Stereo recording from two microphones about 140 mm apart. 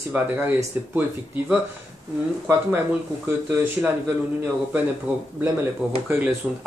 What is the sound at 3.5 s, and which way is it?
Speech, 15° right (ahead or behind).